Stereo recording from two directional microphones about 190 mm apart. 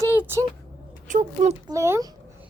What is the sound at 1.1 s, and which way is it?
Speech, 45° right (ahead or behind).